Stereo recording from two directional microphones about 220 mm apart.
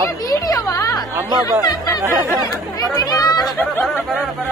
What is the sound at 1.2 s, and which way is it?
Speech, 10° right (ahead or behind).